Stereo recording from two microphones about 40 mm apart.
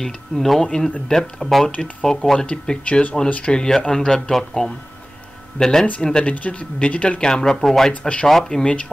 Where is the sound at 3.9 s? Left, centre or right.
Centre.